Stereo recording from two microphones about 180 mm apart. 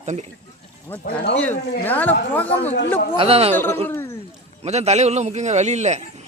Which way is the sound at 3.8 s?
15° left (ahead or behind).